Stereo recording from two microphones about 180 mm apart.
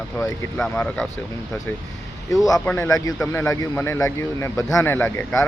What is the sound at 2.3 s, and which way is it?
Speech, 20° left (ahead or behind).